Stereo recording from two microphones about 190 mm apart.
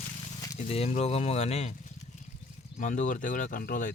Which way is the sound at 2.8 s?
40° left (ahead or behind).